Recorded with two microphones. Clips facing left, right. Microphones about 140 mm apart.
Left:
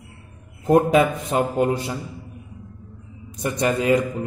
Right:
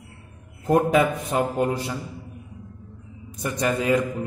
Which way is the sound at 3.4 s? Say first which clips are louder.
Left 3 dB; 20° left (ahead or behind).